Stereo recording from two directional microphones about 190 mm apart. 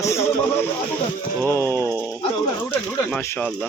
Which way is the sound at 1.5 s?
15° left (ahead or behind).